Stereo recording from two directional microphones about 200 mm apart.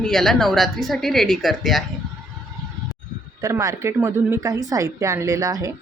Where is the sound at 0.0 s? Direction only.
Centre (ahead or behind).